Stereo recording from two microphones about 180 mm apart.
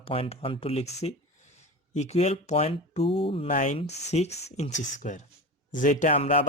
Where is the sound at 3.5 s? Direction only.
45° left (ahead or behind).